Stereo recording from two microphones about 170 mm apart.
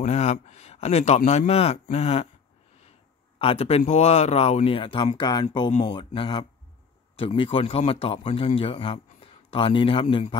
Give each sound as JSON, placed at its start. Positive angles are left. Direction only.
{"t": 0.0, "sound": "speech", "side_deg": 40}
{"t": 3.3, "sound": "speech", "side_deg": 35}